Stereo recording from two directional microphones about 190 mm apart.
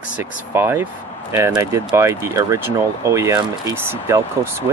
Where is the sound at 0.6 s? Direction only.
10° right (ahead or behind).